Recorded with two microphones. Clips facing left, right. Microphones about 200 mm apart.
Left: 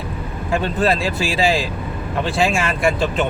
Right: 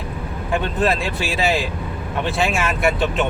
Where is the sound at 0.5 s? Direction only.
Centre (ahead or behind).